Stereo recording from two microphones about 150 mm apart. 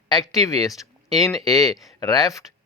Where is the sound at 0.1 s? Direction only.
25° left (ahead or behind).